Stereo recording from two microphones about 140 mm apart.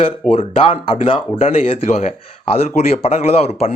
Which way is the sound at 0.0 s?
45° left (ahead or behind).